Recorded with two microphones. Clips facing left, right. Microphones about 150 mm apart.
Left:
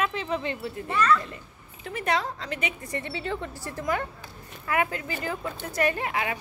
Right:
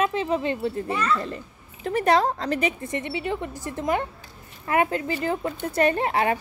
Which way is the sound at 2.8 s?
20° right (ahead or behind).